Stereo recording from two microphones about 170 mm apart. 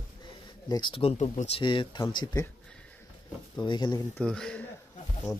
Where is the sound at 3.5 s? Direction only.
25° left (ahead or behind).